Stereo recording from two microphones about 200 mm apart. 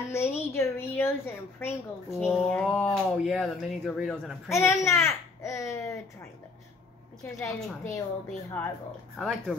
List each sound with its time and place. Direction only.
0.1 s a woman's voice: 15° left (ahead or behind)
4.5 s a woman's voice: 15° left (ahead or behind)
7.3 s a woman's voice: 15° left (ahead or behind)
9.2 s speech: centre (ahead or behind)